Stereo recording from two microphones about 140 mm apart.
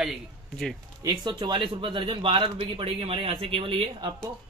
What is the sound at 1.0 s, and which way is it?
Speech, 30° right (ahead or behind).